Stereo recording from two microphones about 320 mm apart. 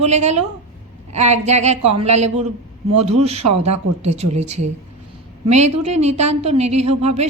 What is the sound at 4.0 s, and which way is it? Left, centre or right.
A woman's voice, centre.